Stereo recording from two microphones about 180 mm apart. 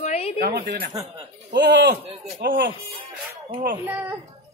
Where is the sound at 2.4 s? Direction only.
55° right (ahead or behind).